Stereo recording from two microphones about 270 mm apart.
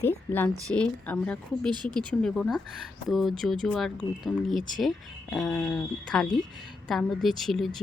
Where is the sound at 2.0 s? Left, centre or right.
Centre.